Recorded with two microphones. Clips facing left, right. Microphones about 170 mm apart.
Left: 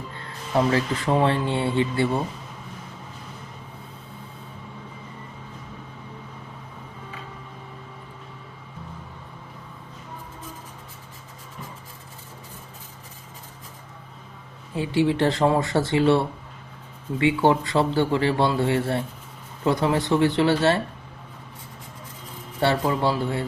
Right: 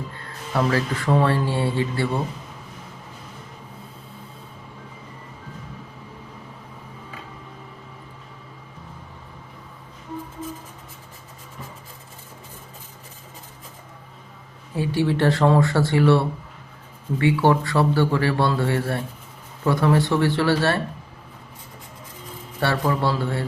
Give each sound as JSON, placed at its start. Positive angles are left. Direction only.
{"t": 0.5, "sound": "a man's voice", "side_deg": 20}
{"t": 14.8, "sound": "a man's voice", "side_deg": 20}
{"t": 22.6, "sound": "a man's voice", "side_deg": 20}